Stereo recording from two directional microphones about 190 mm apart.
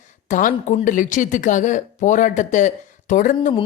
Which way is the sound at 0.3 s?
45° left (ahead or behind).